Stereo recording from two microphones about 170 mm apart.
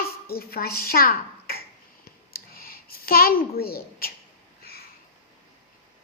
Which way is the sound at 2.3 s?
60° left (ahead or behind).